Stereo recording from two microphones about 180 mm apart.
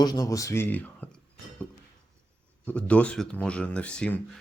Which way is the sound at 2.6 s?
10° left (ahead or behind).